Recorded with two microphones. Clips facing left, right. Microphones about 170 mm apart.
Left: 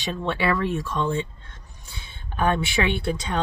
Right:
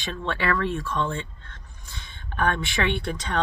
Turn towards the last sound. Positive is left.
turn(degrees=5)  # may be behind; listen again after turning